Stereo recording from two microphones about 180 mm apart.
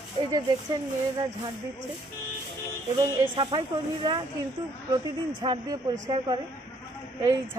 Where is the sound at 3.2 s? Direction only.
25° right (ahead or behind).